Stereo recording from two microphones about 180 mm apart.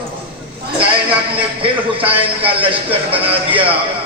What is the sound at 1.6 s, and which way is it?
A man's voice, 30° right (ahead or behind).